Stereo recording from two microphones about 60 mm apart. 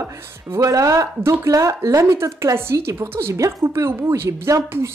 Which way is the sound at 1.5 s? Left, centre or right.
Right.